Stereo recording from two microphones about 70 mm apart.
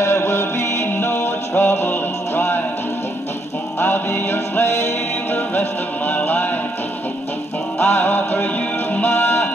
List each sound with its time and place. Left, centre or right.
0.0 s music: left
3.8 s music: left
7.8 s music: left